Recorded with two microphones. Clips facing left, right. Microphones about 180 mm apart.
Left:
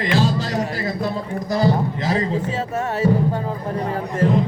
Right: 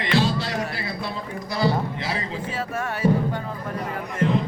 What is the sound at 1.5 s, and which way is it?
Speech, 45° left (ahead or behind).